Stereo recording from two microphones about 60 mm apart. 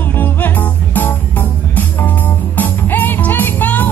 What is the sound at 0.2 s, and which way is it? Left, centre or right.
Music, left.